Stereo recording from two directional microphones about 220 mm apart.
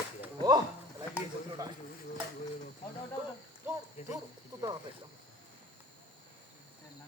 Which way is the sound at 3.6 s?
10° right (ahead or behind).